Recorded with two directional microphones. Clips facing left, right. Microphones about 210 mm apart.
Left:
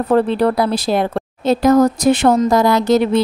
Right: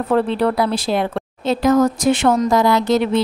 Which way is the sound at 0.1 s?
40° left (ahead or behind).